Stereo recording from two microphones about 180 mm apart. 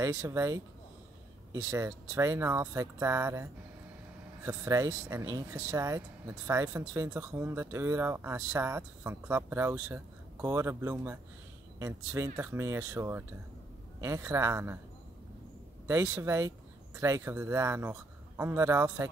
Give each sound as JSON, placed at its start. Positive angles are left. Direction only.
{"t": 0.0, "sound": "speech", "side_deg": -20}
{"t": 1.7, "sound": "speech", "side_deg": -15}
{"t": 4.5, "sound": "speech", "side_deg": -15}
{"t": 15.9, "sound": "speech", "side_deg": -15}